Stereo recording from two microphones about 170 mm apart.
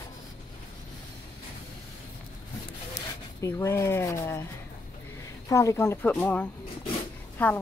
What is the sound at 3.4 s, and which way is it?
A woman's voice, 15° left (ahead or behind).